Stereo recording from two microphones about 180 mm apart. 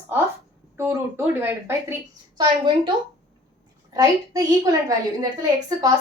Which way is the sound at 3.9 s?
20° right (ahead or behind).